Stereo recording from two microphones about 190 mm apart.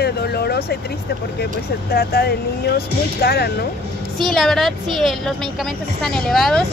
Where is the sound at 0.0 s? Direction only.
55° left (ahead or behind).